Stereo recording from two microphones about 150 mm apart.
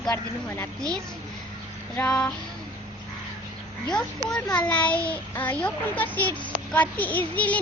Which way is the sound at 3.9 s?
5° left (ahead or behind).